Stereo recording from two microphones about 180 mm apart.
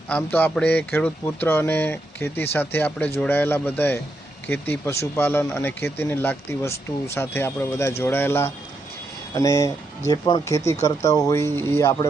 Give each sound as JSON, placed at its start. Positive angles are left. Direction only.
{"t": 0.1, "sound": "speech", "side_deg": 10}